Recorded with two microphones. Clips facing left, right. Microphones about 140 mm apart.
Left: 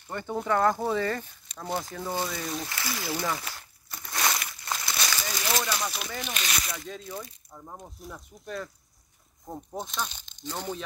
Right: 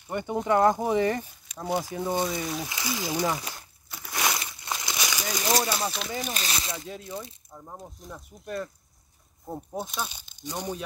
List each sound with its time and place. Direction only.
0.1 s speech: 15° right (ahead or behind)
4.1 s crushing: 15° right (ahead or behind)
4.4 s a sound: 20° right (ahead or behind)
5.5 s a sound: 35° right (ahead or behind)
6.2 s speech: 35° right (ahead or behind)
6.9 s speech: 5° right (ahead or behind)